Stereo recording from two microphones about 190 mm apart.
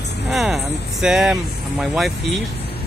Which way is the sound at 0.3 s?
Centre (ahead or behind).